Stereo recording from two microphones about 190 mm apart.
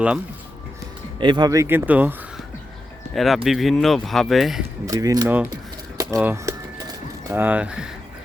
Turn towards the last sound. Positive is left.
turn(degrees=-5)  # may be behind; listen again after turning